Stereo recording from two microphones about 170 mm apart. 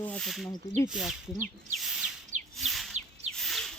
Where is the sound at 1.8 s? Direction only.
5° right (ahead or behind).